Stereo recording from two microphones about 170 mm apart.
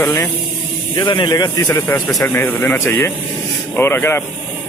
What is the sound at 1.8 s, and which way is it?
A man's voice, 10° left (ahead or behind).